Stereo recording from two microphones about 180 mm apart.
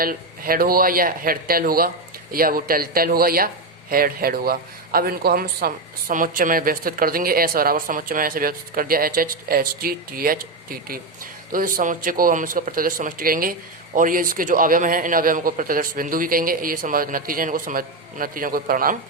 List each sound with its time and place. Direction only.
0.0 s speech: 55° right (ahead or behind)